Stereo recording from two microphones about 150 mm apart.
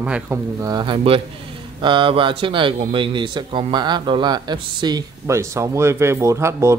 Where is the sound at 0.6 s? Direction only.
30° right (ahead or behind).